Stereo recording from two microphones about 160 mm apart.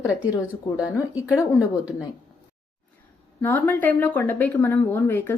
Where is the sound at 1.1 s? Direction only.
10° right (ahead or behind).